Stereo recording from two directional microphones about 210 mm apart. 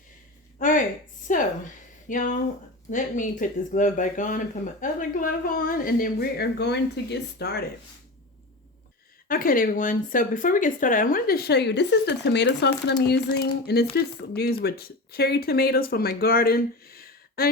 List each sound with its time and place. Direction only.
1.3 s speech: 40° left (ahead or behind)
9.2 s speech: 45° left (ahead or behind)